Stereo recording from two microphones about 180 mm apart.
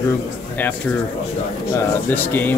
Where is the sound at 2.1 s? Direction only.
10° left (ahead or behind).